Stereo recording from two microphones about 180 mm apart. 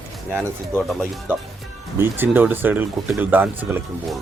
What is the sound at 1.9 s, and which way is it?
Speech, 10° right (ahead or behind).